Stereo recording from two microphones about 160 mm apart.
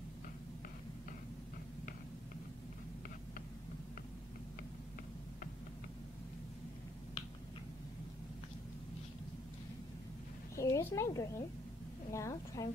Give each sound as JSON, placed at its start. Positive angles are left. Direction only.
{"t": 10.5, "sound": "a woman's voice", "side_deg": 20}